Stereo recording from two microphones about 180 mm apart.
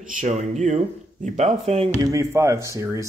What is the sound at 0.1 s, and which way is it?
Speech, 45° right (ahead or behind).